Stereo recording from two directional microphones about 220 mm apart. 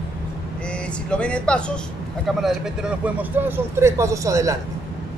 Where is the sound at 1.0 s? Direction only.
5° left (ahead or behind).